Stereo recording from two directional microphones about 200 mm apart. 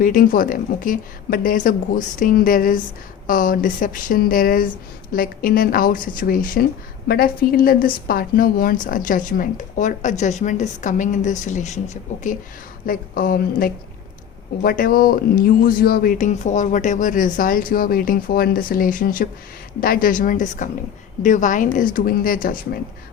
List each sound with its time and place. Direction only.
0.0 s a woman's voice: 45° left (ahead or behind)
12.8 s speech: 45° left (ahead or behind)